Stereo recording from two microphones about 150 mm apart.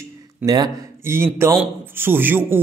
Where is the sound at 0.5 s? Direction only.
20° right (ahead or behind).